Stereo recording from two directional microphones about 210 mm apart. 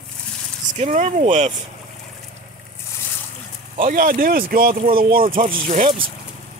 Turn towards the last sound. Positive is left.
turn(degrees=-35)  # may be behind; listen again after turning